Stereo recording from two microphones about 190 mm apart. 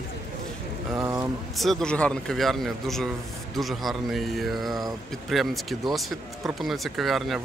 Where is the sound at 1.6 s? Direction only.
Centre (ahead or behind).